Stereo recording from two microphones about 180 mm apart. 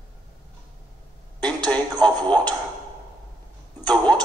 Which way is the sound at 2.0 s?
5° left (ahead or behind).